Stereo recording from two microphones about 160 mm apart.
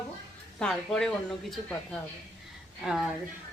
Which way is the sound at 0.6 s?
5° left (ahead or behind).